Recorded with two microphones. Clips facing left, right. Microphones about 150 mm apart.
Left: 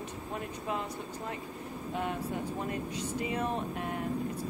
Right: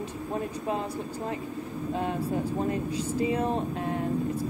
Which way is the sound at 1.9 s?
30° right (ahead or behind).